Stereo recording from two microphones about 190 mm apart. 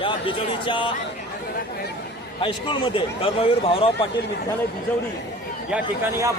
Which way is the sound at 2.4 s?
25° left (ahead or behind).